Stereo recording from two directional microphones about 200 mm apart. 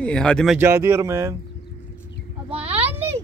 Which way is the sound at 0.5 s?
10° right (ahead or behind).